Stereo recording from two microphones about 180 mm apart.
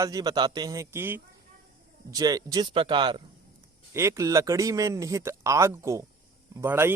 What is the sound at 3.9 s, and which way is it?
A man's voice, 15° right (ahead or behind).